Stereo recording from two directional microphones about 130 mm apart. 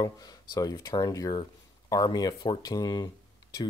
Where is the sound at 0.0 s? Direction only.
30° left (ahead or behind).